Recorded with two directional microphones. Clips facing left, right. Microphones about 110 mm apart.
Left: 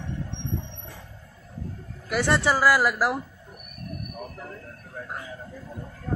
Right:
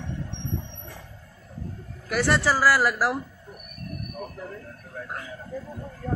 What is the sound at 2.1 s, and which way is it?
A man's voice, 20° left (ahead or behind).